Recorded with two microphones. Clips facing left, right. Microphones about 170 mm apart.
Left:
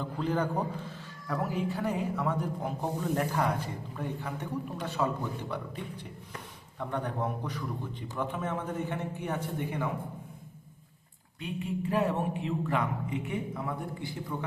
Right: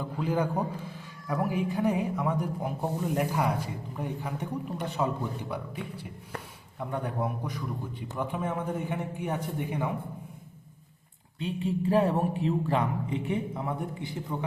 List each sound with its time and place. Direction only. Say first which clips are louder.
0.0 s a man's voice: right 1 dB; 10° right (ahead or behind)
5.5 s a man's voice: right 1 dB; 10° right (ahead or behind)
11.3 s a man's voice: right 4 dB; 30° right (ahead or behind)